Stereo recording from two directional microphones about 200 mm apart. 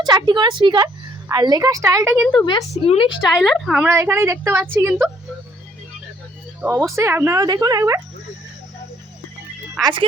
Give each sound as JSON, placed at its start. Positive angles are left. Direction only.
{"t": 0.0, "sound": "a woman's voice", "side_deg": -20}
{"t": 2.4, "sound": "a woman's voice", "side_deg": 15}
{"t": 3.2, "sound": "speech", "side_deg": 0}
{"t": 3.8, "sound": "speech", "side_deg": -15}
{"t": 6.6, "sound": "speech", "side_deg": -5}
{"t": 9.8, "sound": "a woman's voice", "side_deg": -25}